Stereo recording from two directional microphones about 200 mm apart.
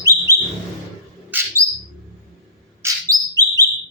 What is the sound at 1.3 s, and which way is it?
Bird, 10° right (ahead or behind).